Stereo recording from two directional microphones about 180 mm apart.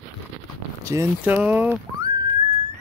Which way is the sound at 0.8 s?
15° right (ahead or behind).